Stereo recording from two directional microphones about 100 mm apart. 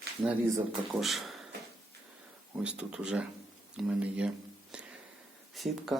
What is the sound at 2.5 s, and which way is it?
Speech, 10° right (ahead or behind).